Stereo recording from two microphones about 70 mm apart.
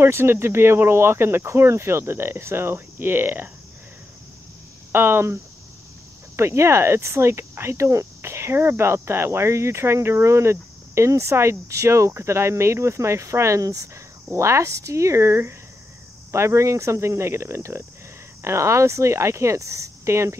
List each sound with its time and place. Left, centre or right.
0.0 s speech: right
4.9 s speech: right